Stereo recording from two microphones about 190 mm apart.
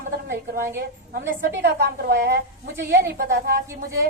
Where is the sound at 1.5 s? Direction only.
65° right (ahead or behind).